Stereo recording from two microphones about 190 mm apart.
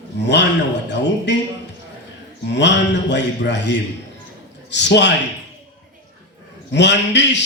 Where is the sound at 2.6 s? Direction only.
65° left (ahead or behind).